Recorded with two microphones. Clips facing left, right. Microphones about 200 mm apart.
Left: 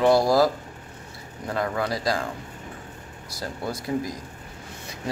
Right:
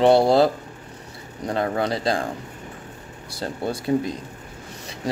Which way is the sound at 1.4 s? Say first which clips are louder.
Right 3 dB; 30° right (ahead or behind).